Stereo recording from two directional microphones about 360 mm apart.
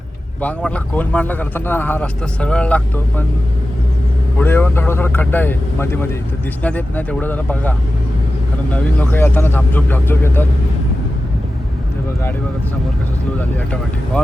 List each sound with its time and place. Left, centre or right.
0.4 s speech: centre
4.4 s speech: centre